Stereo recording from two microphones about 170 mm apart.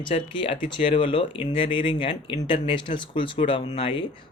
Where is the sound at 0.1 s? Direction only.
30° left (ahead or behind).